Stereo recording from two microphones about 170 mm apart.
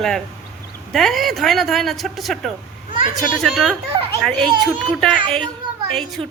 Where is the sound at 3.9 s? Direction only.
25° right (ahead or behind).